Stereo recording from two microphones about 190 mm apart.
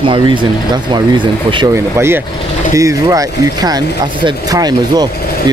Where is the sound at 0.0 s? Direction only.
25° right (ahead or behind).